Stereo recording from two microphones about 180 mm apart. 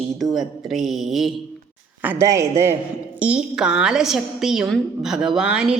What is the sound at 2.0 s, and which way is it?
A man's voice, 10° right (ahead or behind).